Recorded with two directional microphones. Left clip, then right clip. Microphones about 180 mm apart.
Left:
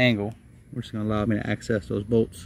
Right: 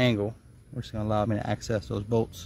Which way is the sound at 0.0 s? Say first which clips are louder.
Left 3 dB; 5° right (ahead or behind).